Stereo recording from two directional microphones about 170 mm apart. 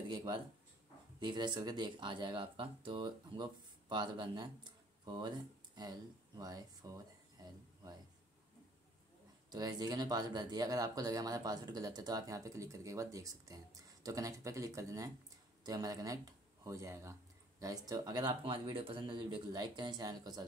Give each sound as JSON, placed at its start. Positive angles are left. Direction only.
{"t": 0.1, "sound": "speech", "side_deg": -25}
{"t": 9.5, "sound": "speech", "side_deg": -25}